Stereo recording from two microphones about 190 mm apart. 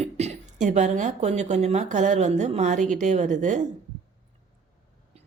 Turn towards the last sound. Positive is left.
turn(degrees=-40)  # may be behind; listen again after turning